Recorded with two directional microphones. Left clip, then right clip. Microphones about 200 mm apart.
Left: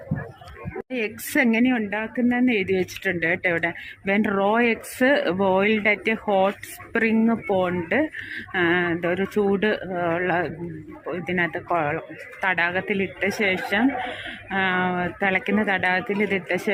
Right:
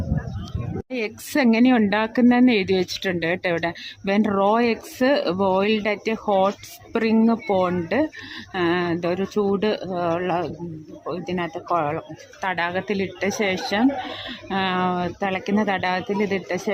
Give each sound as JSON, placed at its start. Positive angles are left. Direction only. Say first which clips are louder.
{"t": 0.9, "sound": "speech", "louder": "even", "side_deg": -5}
{"t": 1.7, "sound": "speech", "louder": "right 6 dB", "side_deg": -25}